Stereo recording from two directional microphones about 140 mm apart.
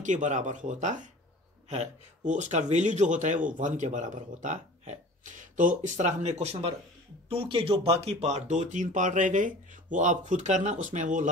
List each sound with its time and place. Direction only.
0.0 s speech: 60° right (ahead or behind)